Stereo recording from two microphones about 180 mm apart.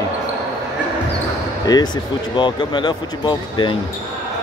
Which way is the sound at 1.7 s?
20° left (ahead or behind).